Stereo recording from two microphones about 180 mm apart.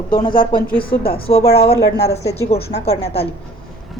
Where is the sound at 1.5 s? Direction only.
60° left (ahead or behind).